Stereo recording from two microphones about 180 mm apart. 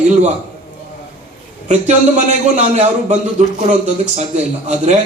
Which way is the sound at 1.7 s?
40° right (ahead or behind).